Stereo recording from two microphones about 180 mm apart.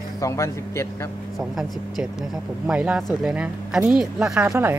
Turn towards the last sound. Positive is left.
turn(degrees=-15)  # may be behind; listen again after turning